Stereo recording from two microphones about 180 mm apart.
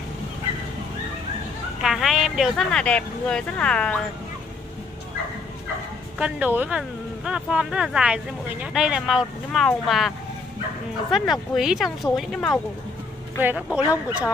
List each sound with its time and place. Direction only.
1.8 s speech: centre (ahead or behind)
6.1 s speech: 5° right (ahead or behind)
13.4 s speech: 5° right (ahead or behind)